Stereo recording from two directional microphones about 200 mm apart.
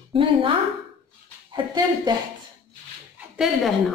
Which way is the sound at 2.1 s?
20° right (ahead or behind).